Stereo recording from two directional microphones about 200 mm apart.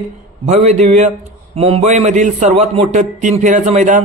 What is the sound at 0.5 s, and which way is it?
A man's voice, 35° right (ahead or behind).